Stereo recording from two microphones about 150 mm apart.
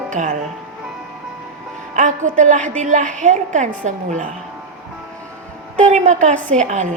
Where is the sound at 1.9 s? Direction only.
55° right (ahead or behind).